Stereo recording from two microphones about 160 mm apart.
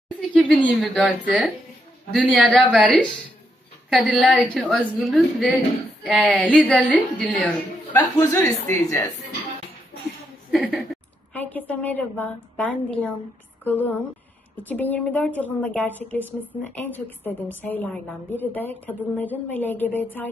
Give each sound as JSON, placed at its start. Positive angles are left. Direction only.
{"t": 0.3, "sound": "a woman's voice", "side_deg": 5}
{"t": 3.9, "sound": "a woman's voice", "side_deg": 0}
{"t": 6.3, "sound": "a woman's voice", "side_deg": 5}
{"t": 7.9, "sound": "speech", "side_deg": 20}
{"t": 11.3, "sound": "a woman's voice", "side_deg": 10}